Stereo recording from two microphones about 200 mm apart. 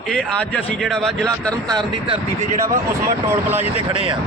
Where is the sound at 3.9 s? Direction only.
25° right (ahead or behind).